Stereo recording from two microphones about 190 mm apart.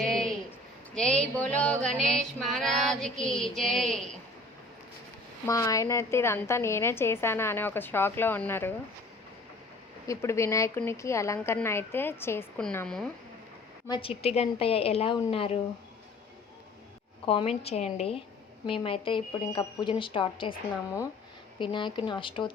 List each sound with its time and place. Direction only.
0.0 s a sound: centre (ahead or behind)
1.4 s a woman's voice: 5° left (ahead or behind)
2.0 s female singing: centre (ahead or behind)
5.5 s a woman's voice: 15° left (ahead or behind)
10.1 s a woman's voice: 15° left (ahead or behind)
13.8 s speech: 25° left (ahead or behind)
17.2 s a woman's voice: 30° left (ahead or behind)